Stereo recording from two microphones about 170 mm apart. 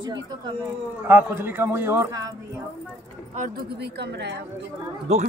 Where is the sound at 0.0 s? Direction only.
25° right (ahead or behind).